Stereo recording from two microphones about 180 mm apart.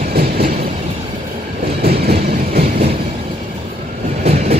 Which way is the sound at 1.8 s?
60° right (ahead or behind).